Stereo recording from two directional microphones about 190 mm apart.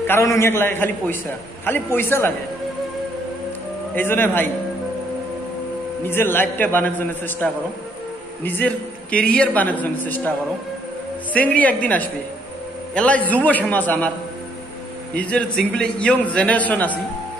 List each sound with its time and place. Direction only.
0.0 s a man's voice: 15° left (ahead or behind)
3.9 s a man's voice: 10° left (ahead or behind)
6.0 s a man's voice: 10° left (ahead or behind)
11.3 s a man's voice: 10° left (ahead or behind)
15.1 s a man's voice: 5° left (ahead or behind)